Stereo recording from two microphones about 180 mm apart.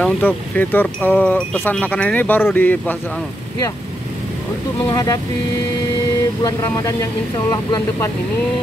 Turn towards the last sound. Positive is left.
turn(degrees=15)  # may be behind; listen again after turning